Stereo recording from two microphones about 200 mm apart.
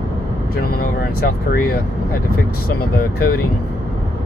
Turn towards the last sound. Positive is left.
turn(degrees=50)  # may be behind; listen again after turning